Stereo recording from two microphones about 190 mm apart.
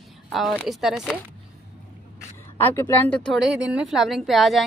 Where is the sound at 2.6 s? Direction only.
15° left (ahead or behind).